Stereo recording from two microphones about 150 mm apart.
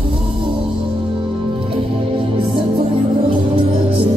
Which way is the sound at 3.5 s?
40° right (ahead or behind).